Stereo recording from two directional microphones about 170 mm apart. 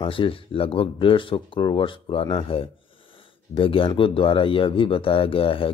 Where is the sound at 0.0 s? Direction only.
30° left (ahead or behind).